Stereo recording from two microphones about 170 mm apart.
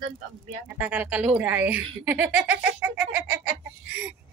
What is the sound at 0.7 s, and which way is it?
Speech, 10° right (ahead or behind).